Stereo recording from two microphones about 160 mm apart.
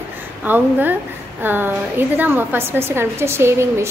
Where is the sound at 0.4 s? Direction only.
10° right (ahead or behind).